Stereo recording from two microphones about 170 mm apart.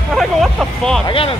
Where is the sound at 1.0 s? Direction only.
30° left (ahead or behind).